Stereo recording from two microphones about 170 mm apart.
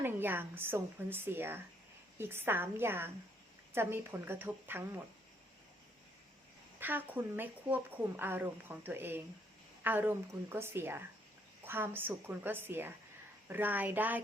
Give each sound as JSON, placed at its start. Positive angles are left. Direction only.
{"t": 0.0, "sound": "speech", "side_deg": -10}
{"t": 6.7, "sound": "speech", "side_deg": -10}